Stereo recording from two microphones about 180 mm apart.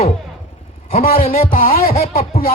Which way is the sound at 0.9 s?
50° left (ahead or behind).